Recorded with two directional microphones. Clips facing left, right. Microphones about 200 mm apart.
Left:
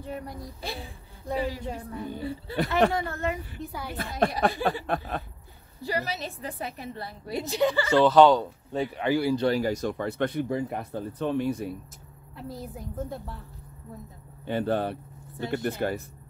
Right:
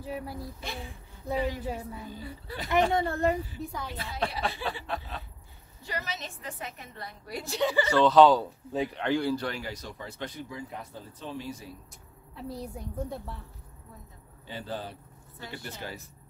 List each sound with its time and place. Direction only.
0.0 s speech: 5° right (ahead or behind)
0.6 s a woman's voice: 35° left (ahead or behind)
1.6 s a woman's voice: 5° right (ahead or behind)
2.5 s speech: 25° left (ahead or behind)
2.9 s speech: 30° right (ahead or behind)
3.5 s speech: 5° left (ahead or behind)
3.9 s a woman's voice: 50° left (ahead or behind)
5.8 s a woman's voice: 35° left (ahead or behind)
8.0 s speech: centre (ahead or behind)
9.4 s speech: 35° left (ahead or behind); by 11.7 s 60° left (ahead or behind)
12.4 s speech: centre (ahead or behind)
14.4 s speech: 60° left (ahead or behind)